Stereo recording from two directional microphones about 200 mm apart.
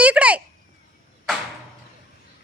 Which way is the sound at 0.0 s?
5° right (ahead or behind).